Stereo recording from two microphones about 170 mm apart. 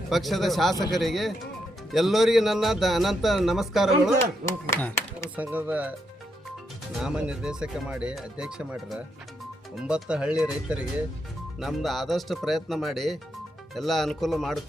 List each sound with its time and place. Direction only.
0.1 s speech: centre (ahead or behind)
4.2 s speech: 15° left (ahead or behind)
5.4 s speech: 10° right (ahead or behind)
7.0 s speech: 5° right (ahead or behind)